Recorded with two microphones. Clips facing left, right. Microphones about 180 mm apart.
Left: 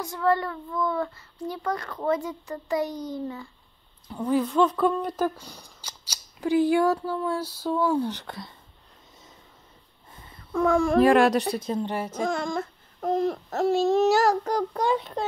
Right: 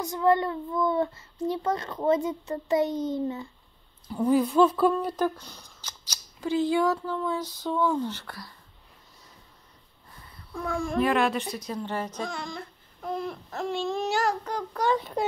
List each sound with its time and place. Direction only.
0.0 s a child's voice: 20° right (ahead or behind)
4.1 s speech: 10° right (ahead or behind); by 8.5 s 20° left (ahead or behind)
10.6 s speech: 80° left
11.0 s a sound: 40° left (ahead or behind)
11.5 s a woman's voice: 25° left (ahead or behind)
11.8 s speech: 10° left (ahead or behind)
12.2 s a sound: 50° left (ahead or behind)
15.0 s a child's voice: 5° right (ahead or behind)